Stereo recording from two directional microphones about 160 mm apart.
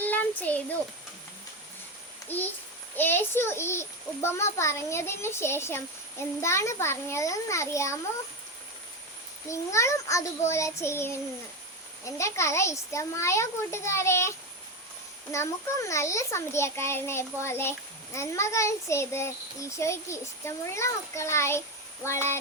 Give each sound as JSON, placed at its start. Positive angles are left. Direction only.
{"t": 0.0, "sound": "a sound", "side_deg": 10}
{"t": 2.3, "sound": "a child's voice", "side_deg": 10}
{"t": 9.5, "sound": "a child's voice", "side_deg": 20}